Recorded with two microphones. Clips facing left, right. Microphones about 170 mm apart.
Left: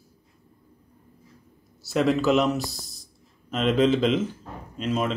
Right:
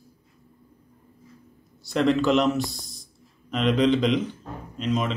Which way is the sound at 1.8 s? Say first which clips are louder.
Right 1 dB; 5° left (ahead or behind).